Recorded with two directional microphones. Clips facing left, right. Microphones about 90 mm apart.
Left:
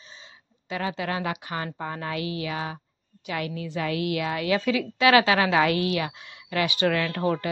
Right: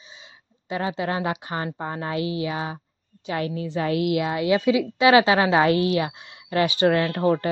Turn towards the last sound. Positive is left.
turn(degrees=-30)  # may be behind; listen again after turning